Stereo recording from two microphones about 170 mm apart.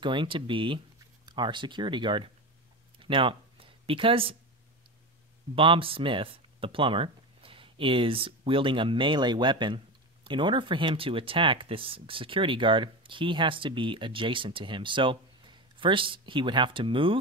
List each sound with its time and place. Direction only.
0.0 s speech: 30° right (ahead or behind)
3.0 s a sound: 30° right (ahead or behind)
5.6 s speech: 30° right (ahead or behind)